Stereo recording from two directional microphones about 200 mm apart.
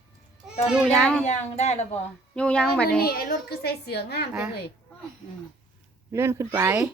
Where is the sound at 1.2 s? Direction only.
35° left (ahead or behind).